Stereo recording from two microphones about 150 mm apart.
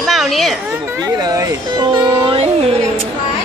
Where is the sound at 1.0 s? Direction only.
25° right (ahead or behind).